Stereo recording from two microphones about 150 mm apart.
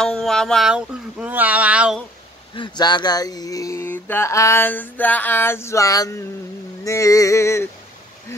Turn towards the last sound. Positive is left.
turn(degrees=20)  # may be behind; listen again after turning